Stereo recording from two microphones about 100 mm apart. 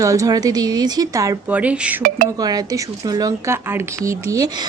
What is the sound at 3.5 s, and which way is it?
Speech, 25° right (ahead or behind).